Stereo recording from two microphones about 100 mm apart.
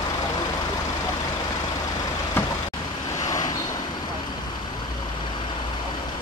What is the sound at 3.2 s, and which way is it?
Vehicle, 40° left (ahead or behind).